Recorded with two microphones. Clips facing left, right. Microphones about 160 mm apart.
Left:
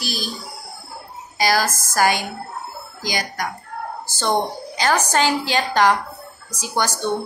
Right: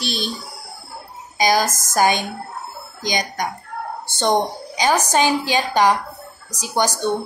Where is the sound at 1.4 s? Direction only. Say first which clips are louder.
Right 2 dB; 20° right (ahead or behind).